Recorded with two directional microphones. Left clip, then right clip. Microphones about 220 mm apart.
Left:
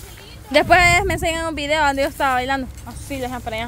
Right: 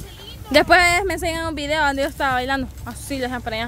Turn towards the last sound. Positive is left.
turn(degrees=-15)  # may be behind; listen again after turning